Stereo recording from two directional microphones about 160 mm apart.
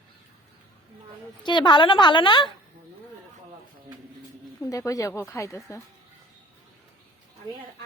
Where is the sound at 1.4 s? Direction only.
30° left (ahead or behind).